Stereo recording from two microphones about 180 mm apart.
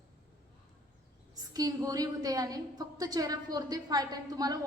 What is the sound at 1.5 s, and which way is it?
Speech, 20° right (ahead or behind).